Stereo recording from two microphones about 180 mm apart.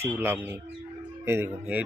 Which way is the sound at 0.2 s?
10° right (ahead or behind).